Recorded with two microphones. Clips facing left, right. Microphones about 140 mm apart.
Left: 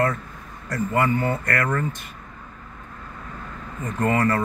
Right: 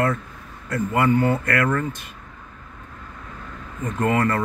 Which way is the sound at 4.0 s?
Centre (ahead or behind).